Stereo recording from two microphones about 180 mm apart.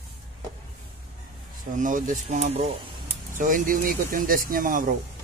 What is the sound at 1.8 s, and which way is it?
Speech, 45° right (ahead or behind).